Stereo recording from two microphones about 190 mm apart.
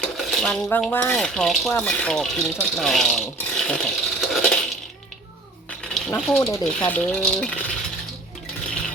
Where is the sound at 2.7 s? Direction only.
Centre (ahead or behind).